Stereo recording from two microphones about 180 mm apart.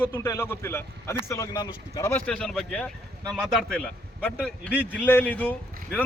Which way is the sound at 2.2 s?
5° left (ahead or behind).